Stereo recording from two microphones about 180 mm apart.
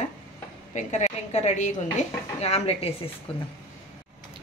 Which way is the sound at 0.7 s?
40° left (ahead or behind).